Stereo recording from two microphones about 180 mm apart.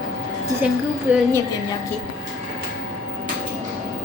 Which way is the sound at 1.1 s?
10° right (ahead or behind).